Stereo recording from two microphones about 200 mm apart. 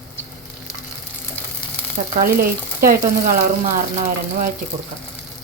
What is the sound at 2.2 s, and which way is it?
Speech, 45° right (ahead or behind).